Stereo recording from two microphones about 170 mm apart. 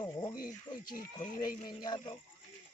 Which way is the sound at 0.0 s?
25° left (ahead or behind).